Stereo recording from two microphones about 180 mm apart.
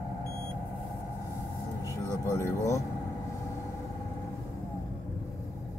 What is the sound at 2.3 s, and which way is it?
Vehicle, 15° left (ahead or behind).